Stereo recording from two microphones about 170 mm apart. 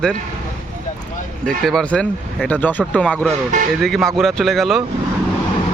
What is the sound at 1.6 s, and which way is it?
Speech, 5° left (ahead or behind).